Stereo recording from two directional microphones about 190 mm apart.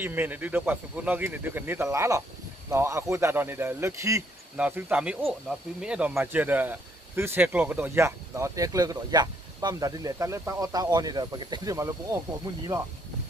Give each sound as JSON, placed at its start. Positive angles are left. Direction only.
{"t": 0.0, "sound": "a man's voice", "side_deg": -10}